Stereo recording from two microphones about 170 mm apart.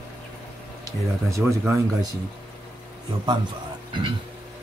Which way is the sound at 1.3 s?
15° right (ahead or behind).